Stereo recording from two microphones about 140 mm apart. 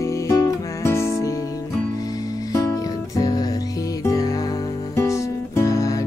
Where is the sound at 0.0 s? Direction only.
20° left (ahead or behind).